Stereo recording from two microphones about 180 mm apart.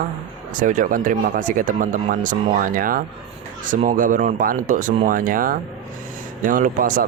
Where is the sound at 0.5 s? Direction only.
45° right (ahead or behind).